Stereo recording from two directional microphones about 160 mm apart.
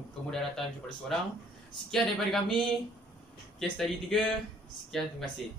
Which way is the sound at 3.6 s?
5° left (ahead or behind).